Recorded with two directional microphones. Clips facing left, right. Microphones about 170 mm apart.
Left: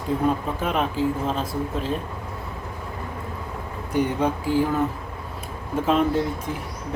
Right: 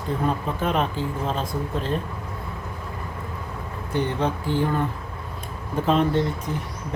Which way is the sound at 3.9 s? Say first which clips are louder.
Left 2 dB; 10° left (ahead or behind).